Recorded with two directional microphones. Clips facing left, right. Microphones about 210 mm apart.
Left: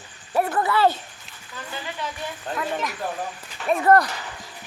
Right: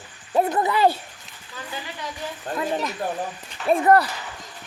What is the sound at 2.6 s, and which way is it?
Speech, 30° right (ahead or behind).